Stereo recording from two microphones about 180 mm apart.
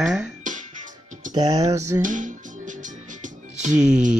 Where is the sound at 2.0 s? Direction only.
45° right (ahead or behind).